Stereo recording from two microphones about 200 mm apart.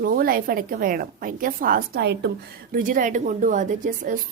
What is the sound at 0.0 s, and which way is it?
A woman's voice, 45° right (ahead or behind).